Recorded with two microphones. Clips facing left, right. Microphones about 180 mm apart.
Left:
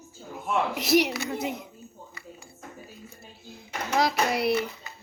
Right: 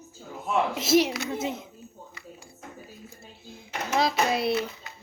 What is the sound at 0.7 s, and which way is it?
Speech, 25° right (ahead or behind).